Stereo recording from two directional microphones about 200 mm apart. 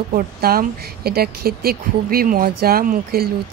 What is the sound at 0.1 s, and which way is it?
Speech, 45° right (ahead or behind).